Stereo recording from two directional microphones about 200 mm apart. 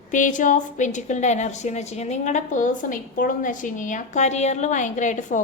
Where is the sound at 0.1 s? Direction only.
40° left (ahead or behind).